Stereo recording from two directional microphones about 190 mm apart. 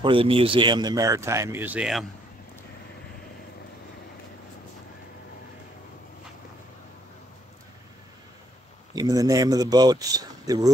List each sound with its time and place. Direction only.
0.0 s speech: 30° right (ahead or behind); by 2.0 s 5° right (ahead or behind)
8.9 s speech: 20° right (ahead or behind)